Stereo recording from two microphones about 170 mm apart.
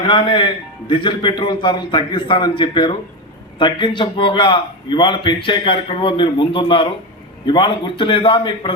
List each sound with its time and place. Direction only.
0.0 s a man's voice: 30° left (ahead or behind)